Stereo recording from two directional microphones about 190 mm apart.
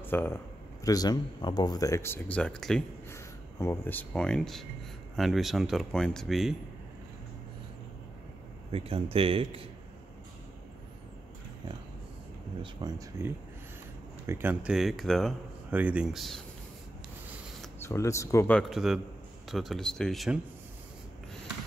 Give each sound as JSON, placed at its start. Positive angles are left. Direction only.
{"t": 0.0, "sound": "speech", "side_deg": 10}
{"t": 3.1, "sound": "speech", "side_deg": 15}
{"t": 8.7, "sound": "speech", "side_deg": -30}
{"t": 12.8, "sound": "speech", "side_deg": -20}
{"t": 17.7, "sound": "speech", "side_deg": 15}
{"t": 18.6, "sound": "speech", "side_deg": 0}